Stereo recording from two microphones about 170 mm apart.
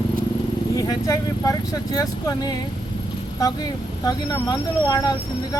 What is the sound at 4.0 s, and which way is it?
Speech, 20° left (ahead or behind).